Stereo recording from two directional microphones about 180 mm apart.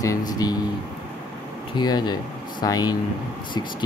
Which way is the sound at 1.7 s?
25° left (ahead or behind).